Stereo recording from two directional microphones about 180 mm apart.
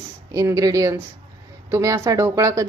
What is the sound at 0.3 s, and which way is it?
A woman's voice, 15° right (ahead or behind).